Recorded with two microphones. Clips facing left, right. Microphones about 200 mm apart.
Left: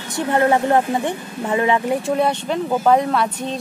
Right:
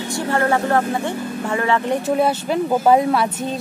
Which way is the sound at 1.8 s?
5° right (ahead or behind).